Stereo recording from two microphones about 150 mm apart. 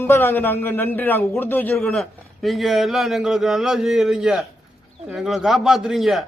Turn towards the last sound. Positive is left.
turn(degrees=0)  # may be behind; listen again after turning